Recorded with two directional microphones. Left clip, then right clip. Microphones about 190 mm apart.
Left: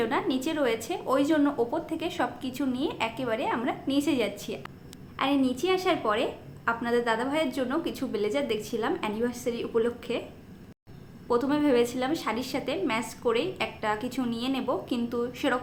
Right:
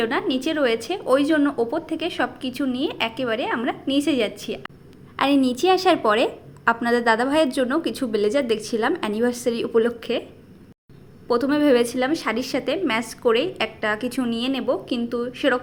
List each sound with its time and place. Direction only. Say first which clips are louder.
0.0 s speech: right 5 dB; 25° right (ahead or behind)
5.1 s a woman's voice: right 7 dB; 45° right (ahead or behind); by 10.2 s 30° right (ahead or behind)
11.3 s a woman's voice: right 6 dB; 30° right (ahead or behind)